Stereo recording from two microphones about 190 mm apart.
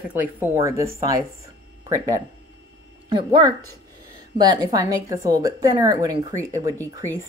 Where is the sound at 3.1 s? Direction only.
25° right (ahead or behind).